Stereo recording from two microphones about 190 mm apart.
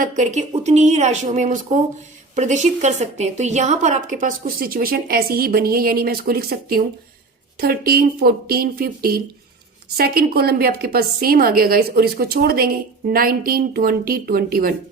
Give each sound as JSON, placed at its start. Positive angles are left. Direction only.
{"t": 0.0, "sound": "a woman's voice", "side_deg": -40}